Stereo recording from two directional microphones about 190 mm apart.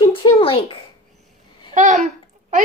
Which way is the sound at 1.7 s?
40° right (ahead or behind).